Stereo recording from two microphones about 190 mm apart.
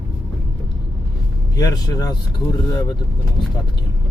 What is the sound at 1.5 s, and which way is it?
Speech, 20° left (ahead or behind).